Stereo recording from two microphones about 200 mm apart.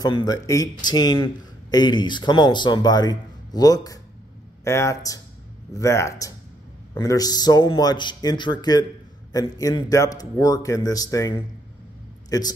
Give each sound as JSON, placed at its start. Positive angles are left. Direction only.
{"t": 0.0, "sound": "a man's voice", "side_deg": 20}